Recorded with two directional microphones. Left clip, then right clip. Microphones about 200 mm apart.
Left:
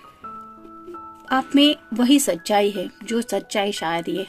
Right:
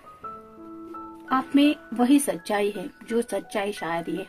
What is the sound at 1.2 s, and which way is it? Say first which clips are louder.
Speech: left 4 dB; 40° left (ahead or behind).